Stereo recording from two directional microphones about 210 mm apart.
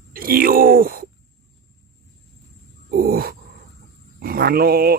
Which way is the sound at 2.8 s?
45° right (ahead or behind).